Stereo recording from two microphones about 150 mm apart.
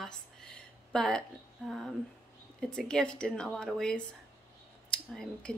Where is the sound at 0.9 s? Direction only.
5° left (ahead or behind).